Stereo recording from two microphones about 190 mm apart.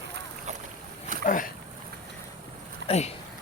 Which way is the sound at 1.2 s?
45° left (ahead or behind).